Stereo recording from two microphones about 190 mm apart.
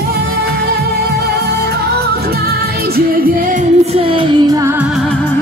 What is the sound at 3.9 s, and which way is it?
Music, 30° right (ahead or behind).